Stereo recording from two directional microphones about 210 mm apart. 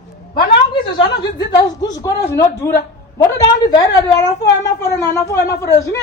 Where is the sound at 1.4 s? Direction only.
20° left (ahead or behind).